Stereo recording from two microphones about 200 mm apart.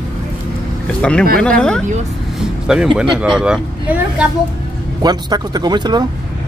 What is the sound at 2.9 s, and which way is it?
Speech, 5° right (ahead or behind).